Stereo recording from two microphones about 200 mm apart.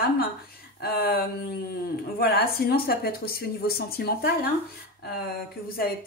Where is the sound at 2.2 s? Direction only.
50° left (ahead or behind).